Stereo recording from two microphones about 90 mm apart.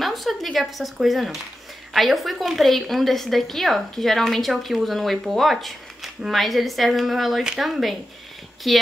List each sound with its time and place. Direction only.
0.0 s a woman's voice: centre (ahead or behind)